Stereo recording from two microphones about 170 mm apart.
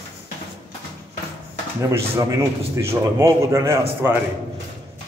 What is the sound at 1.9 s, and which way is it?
A man's voice, 15° right (ahead or behind).